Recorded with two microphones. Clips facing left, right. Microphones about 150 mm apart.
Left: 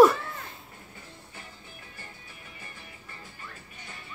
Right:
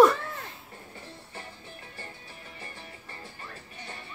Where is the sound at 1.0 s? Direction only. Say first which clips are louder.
Right 4 dB; 30° right (ahead or behind).